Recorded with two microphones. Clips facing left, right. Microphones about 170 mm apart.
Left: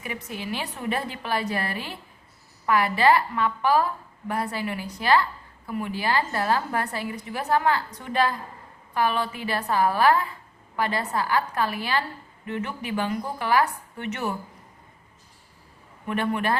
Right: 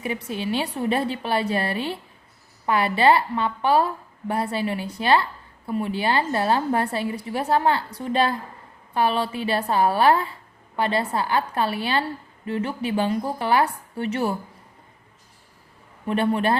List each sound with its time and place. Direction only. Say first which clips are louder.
0.0 s a woman's voice: right 6 dB; 30° right (ahead or behind)
16.0 s a woman's voice: right 4 dB; 30° right (ahead or behind)